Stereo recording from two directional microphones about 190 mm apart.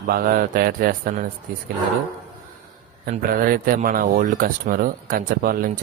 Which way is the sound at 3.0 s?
50° right (ahead or behind).